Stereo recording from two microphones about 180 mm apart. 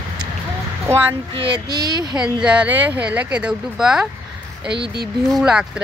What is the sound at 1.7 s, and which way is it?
Speech, 25° right (ahead or behind).